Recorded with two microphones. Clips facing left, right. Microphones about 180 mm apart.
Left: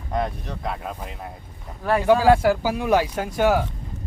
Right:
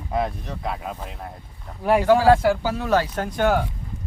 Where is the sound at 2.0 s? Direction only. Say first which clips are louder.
Left 1 dB; 10° left (ahead or behind).